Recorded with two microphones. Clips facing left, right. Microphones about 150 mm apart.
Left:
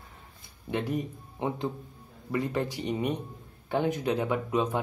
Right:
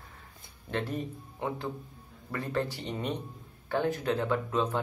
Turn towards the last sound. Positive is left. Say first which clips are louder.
# left 1 dB
turn(degrees=15)  # may be behind; listen again after turning